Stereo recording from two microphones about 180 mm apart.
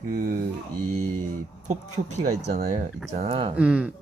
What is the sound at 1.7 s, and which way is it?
Speech, 40° right (ahead or behind).